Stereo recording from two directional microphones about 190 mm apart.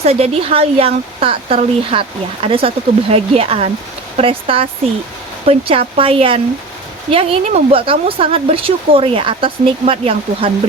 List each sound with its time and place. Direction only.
0.0 s speech: 30° right (ahead or behind)